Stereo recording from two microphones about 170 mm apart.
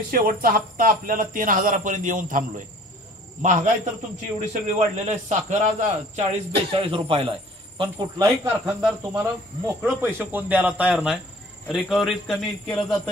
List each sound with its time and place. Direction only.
0.1 s speech: 60° right (ahead or behind); by 8.3 s 25° right (ahead or behind)
8.6 s speech: 5° right (ahead or behind)